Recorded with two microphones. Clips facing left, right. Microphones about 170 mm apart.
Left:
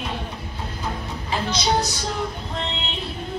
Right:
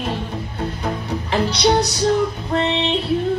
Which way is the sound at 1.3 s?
65° right (ahead or behind).